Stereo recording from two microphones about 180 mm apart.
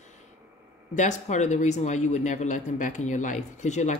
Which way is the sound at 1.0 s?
40° left (ahead or behind).